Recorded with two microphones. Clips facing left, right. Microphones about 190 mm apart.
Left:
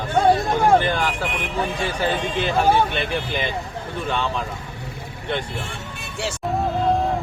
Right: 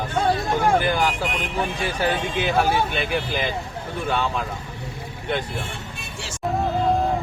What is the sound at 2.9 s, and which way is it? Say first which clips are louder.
Speech: even; centre (ahead or behind).